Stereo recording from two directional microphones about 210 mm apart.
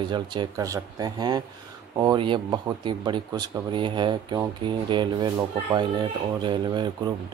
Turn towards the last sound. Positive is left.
turn(degrees=-20)  # may be behind; listen again after turning